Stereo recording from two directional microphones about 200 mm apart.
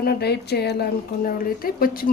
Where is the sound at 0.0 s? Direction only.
55° left (ahead or behind).